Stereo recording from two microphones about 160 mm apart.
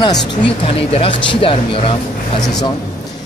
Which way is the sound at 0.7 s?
40° left (ahead or behind).